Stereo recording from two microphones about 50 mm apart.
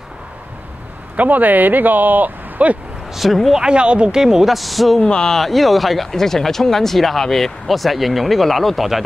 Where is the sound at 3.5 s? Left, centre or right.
Centre.